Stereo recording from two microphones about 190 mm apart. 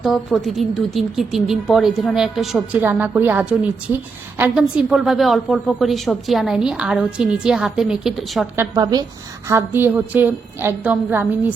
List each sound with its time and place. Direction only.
0.0 s a woman's voice: centre (ahead or behind)
8.5 s a woman's voice: 20° right (ahead or behind)